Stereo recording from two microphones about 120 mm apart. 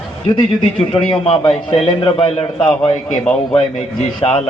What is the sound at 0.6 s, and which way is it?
A man's voice, 50° left (ahead or behind).